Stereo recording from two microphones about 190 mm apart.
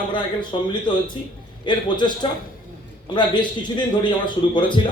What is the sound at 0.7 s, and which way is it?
A man's voice, 25° left (ahead or behind).